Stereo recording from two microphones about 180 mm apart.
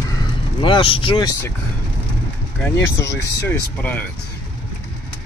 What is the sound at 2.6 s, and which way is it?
Speech, 10° left (ahead or behind).